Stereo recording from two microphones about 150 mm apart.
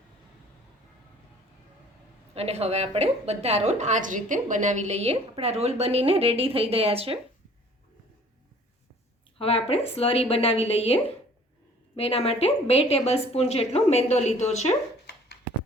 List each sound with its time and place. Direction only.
2.3 s a woman's voice: 45° right (ahead or behind)
9.4 s a woman's voice: 40° left (ahead or behind)